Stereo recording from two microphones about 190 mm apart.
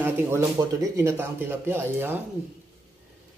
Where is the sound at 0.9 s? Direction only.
15° right (ahead or behind).